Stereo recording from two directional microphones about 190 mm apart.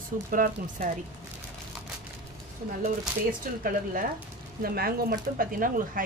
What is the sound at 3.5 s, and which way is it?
Speech, 45° right (ahead or behind).